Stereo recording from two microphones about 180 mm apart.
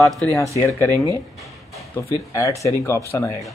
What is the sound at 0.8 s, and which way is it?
Speech, 15° left (ahead or behind).